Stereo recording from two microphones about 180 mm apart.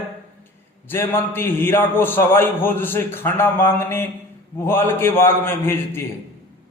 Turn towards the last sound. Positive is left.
turn(degrees=15)  # may be behind; listen again after turning